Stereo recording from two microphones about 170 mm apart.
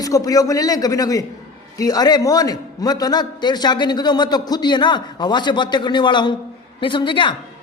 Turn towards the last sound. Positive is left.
turn(degrees=30)  # may be behind; listen again after turning